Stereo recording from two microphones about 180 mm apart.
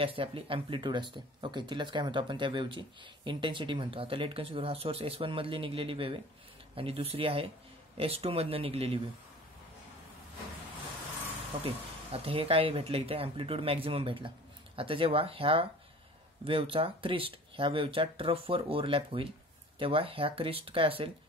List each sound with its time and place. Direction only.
0.0 s speech: 30° right (ahead or behind)
12.1 s speech: 30° right (ahead or behind)